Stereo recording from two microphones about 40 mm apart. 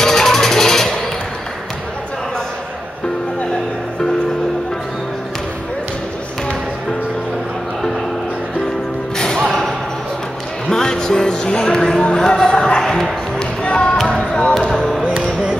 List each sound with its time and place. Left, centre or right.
0.0 s music: centre
9.5 s a sound: centre
10.7 s music: centre
12.4 s basketball bounce: left
12.8 s a sound: centre
13.4 s music: left